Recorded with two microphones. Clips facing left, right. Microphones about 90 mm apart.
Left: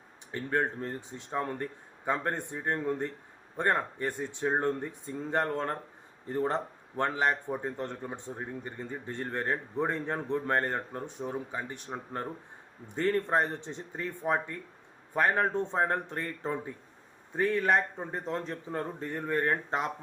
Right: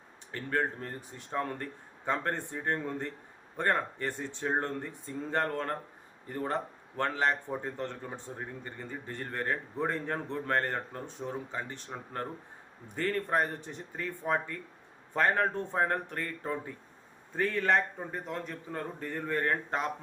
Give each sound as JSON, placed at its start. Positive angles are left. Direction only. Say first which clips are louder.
{"t": 0.3, "sound": "speech", "louder": "left 2 dB", "side_deg": 20}
{"t": 18.1, "sound": "speech", "louder": "left 3 dB", "side_deg": 30}